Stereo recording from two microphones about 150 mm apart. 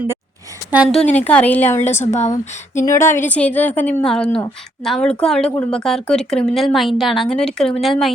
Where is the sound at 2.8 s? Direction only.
15° left (ahead or behind).